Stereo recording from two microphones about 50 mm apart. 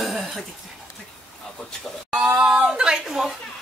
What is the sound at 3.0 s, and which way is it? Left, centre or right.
Speech, centre.